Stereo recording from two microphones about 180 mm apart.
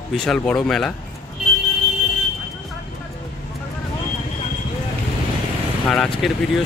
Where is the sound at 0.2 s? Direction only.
5° left (ahead or behind).